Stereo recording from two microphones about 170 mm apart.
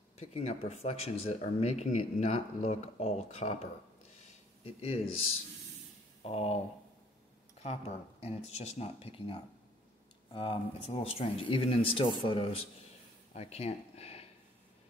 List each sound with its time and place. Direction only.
0.2 s a man's voice: 40° left (ahead or behind)
7.6 s speech: 35° left (ahead or behind)
13.3 s a sound: 40° left (ahead or behind)